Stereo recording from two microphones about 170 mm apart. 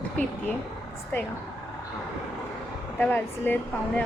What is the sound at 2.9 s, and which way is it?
Speech, 10° left (ahead or behind).